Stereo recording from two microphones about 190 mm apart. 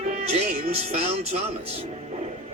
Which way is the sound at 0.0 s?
35° right (ahead or behind).